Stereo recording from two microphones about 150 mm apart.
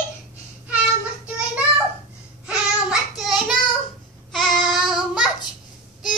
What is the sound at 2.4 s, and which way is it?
Child singing, 5° right (ahead or behind).